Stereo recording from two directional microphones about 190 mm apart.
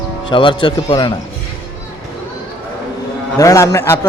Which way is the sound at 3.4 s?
15° left (ahead or behind).